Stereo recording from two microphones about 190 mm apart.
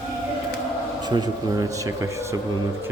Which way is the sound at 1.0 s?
20° right (ahead or behind).